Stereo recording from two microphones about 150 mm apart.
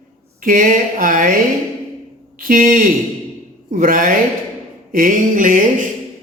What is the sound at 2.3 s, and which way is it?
Speech, 65° right (ahead or behind).